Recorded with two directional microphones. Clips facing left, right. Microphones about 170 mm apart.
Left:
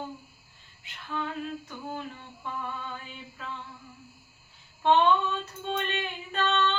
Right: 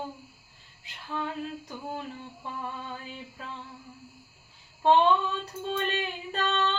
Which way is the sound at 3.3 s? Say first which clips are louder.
Left 6 dB; 35° right (ahead or behind).